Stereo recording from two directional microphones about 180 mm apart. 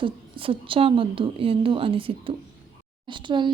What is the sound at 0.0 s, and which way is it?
Speech, 30° right (ahead or behind).